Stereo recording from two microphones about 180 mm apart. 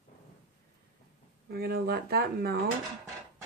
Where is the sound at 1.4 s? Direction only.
60° right (ahead or behind).